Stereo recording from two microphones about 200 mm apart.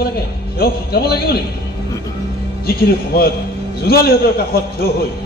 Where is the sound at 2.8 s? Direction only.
50° left (ahead or behind).